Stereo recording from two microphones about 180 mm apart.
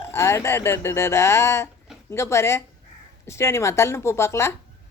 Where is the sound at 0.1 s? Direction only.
15° left (ahead or behind).